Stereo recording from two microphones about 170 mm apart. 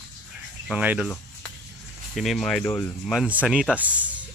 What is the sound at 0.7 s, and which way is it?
Speech, 5° right (ahead or behind).